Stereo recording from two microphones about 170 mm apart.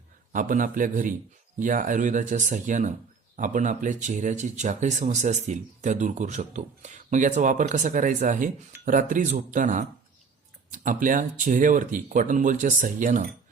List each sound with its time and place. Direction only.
0.3 s speech: 50° right (ahead or behind)